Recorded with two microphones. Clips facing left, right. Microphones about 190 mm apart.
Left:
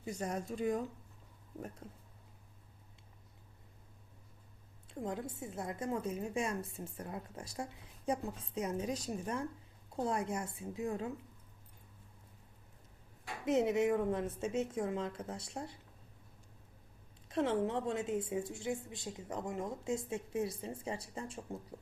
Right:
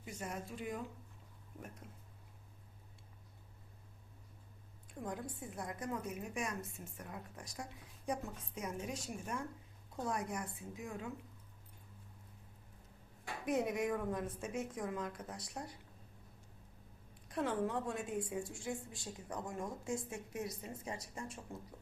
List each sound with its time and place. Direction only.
0.2 s speech: 40° left (ahead or behind)
1.6 s speech: 30° left (ahead or behind)
4.9 s a woman's voice: 25° left (ahead or behind)
13.4 s a woman's voice: 25° left (ahead or behind)
17.2 s a woman's voice: 25° left (ahead or behind)